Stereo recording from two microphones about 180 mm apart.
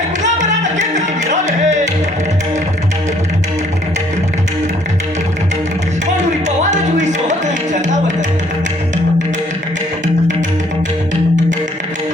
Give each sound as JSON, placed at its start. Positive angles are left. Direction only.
{"t": 0.2, "sound": "music", "side_deg": -40}
{"t": 6.1, "sound": "music", "side_deg": -40}